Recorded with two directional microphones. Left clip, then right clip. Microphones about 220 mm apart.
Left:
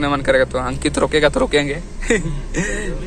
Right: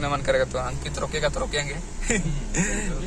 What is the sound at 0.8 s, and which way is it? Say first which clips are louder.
Speech: left 15 dB; 35° left (ahead or behind).